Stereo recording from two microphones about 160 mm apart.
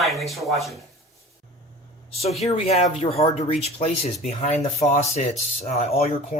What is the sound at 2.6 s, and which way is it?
Speech, 40° left (ahead or behind).